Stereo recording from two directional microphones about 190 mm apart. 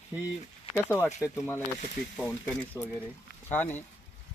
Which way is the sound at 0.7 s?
15° left (ahead or behind).